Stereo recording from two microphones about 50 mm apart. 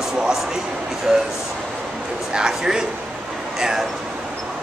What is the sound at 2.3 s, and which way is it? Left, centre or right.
Speech, centre.